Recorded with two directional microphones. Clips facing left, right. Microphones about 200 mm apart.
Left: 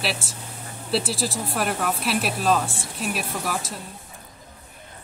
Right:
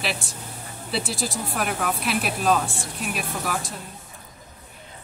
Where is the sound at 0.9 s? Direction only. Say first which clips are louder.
Left 3 dB; centre (ahead or behind).